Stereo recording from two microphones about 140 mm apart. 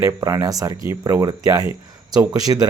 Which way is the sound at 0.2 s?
25° right (ahead or behind).